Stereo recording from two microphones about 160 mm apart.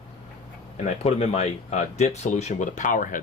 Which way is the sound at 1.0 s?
40° left (ahead or behind).